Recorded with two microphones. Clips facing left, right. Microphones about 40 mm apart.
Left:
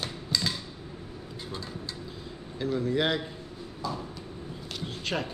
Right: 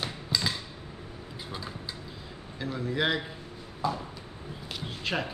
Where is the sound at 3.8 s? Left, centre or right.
Right.